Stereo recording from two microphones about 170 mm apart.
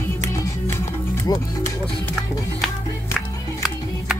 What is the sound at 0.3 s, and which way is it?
Music, 15° left (ahead or behind).